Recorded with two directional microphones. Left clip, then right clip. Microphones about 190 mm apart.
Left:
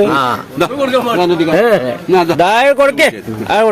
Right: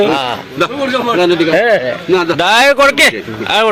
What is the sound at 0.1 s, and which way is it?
Speech, 75° left (ahead or behind).